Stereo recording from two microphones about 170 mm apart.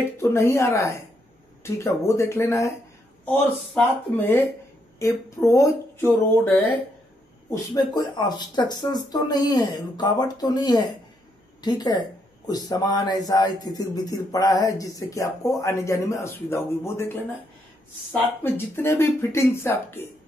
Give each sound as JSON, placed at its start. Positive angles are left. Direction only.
{"t": 0.2, "sound": "speech", "side_deg": 15}
{"t": 7.4, "sound": "speech", "side_deg": 20}
{"t": 18.4, "sound": "speech", "side_deg": 15}